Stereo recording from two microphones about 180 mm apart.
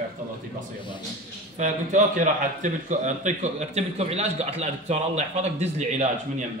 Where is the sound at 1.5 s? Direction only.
45° right (ahead or behind).